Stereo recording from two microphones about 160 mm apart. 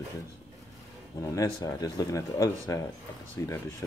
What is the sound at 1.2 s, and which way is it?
Speech, 20° left (ahead or behind).